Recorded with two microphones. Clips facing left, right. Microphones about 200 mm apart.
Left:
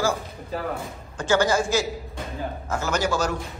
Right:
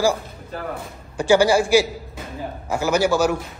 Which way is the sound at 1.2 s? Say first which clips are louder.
Right 5 dB; 10° right (ahead or behind).